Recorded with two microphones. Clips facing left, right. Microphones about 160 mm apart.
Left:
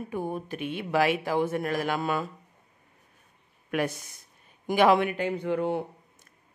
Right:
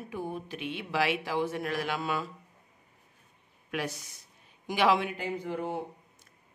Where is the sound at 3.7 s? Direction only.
55° left (ahead or behind); by 5.8 s 70° left (ahead or behind).